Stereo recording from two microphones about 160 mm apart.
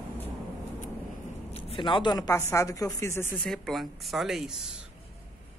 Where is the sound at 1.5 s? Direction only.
35° left (ahead or behind); by 3.3 s 15° left (ahead or behind).